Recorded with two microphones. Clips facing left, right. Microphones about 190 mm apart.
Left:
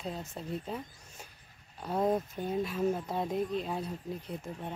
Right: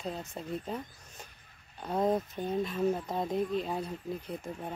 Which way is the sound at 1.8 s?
Centre (ahead or behind).